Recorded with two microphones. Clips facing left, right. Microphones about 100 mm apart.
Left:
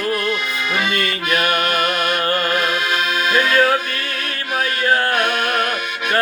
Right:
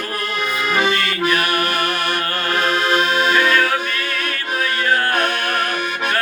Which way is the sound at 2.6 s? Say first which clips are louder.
Right 3 dB; 30° right (ahead or behind).